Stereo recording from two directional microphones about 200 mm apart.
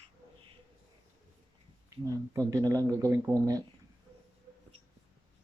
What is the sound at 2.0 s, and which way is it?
Speech, 15° right (ahead or behind).